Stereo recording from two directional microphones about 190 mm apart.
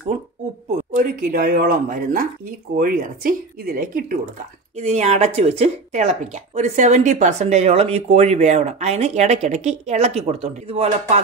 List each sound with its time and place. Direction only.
0.7 s speech: 45° right (ahead or behind)
4.7 s speech: 35° right (ahead or behind)